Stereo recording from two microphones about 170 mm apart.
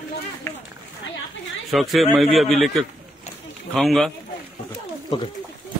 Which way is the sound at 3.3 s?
40° left (ahead or behind).